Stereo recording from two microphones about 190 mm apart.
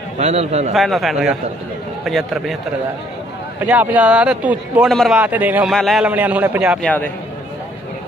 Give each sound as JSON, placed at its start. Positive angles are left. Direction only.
{"t": 0.2, "sound": "a man's voice", "side_deg": -35}
{"t": 0.7, "sound": "a man's voice", "side_deg": 0}
{"t": 3.6, "sound": "a man's voice", "side_deg": -10}
{"t": 6.8, "sound": "speech", "side_deg": 10}